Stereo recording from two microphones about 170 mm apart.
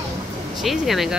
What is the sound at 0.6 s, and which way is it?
Speech, centre (ahead or behind).